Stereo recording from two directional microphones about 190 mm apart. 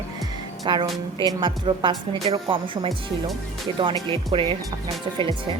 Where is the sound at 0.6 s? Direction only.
25° right (ahead or behind).